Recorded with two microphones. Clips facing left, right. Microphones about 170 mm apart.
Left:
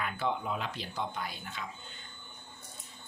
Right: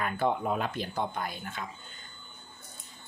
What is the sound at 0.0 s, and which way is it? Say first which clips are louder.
Speech: right 5 dB; 45° right (ahead or behind).